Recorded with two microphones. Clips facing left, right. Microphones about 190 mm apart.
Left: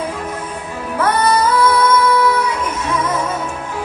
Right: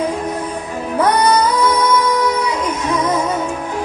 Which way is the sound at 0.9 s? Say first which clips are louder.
Right 2 dB; 15° right (ahead or behind).